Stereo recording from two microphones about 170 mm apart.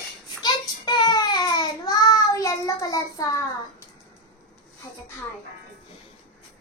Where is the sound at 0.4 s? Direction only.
25° left (ahead or behind).